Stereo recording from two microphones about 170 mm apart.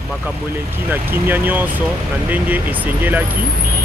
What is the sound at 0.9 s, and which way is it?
Speech, 10° right (ahead or behind).